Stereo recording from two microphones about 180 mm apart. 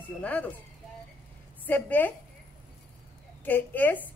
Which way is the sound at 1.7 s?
10° left (ahead or behind).